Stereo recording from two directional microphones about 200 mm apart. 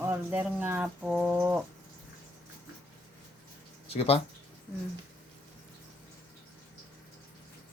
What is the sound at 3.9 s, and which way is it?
Speech, 30° left (ahead or behind).